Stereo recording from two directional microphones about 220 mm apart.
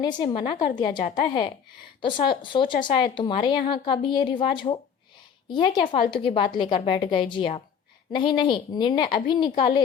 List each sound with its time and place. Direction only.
0.0 s a woman's voice: 20° left (ahead or behind)